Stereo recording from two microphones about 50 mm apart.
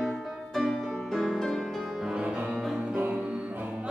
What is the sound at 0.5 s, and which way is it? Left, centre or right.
Music, centre.